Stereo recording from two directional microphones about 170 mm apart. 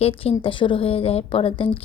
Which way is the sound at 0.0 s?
35° left (ahead or behind).